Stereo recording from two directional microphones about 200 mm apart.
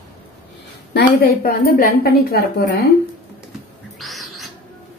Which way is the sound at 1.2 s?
50° left (ahead or behind).